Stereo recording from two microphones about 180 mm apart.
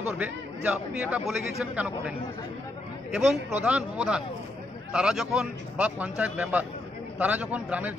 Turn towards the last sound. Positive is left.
turn(degrees=-10)  # may be behind; listen again after turning